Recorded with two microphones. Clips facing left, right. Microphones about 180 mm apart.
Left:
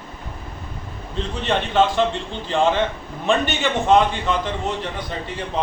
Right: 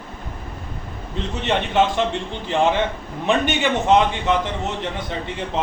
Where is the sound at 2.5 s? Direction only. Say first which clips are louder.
Even; 20° right (ahead or behind).